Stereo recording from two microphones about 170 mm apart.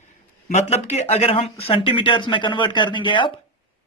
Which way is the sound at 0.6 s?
40° left (ahead or behind).